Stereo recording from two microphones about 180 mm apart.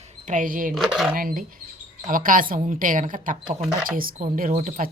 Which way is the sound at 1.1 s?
50° right (ahead or behind).